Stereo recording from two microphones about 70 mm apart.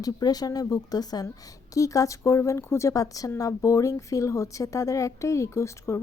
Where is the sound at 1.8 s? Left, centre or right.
Left.